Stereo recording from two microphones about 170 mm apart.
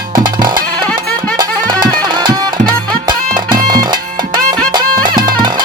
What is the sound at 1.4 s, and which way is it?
Music, 25° right (ahead or behind).